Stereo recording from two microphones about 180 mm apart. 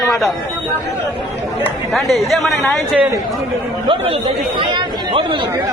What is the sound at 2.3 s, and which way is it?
Speech, centre (ahead or behind).